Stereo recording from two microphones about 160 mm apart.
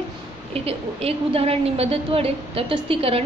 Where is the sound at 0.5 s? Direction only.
40° right (ahead or behind).